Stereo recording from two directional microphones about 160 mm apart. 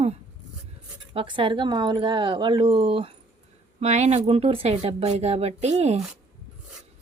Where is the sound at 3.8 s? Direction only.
45° right (ahead or behind).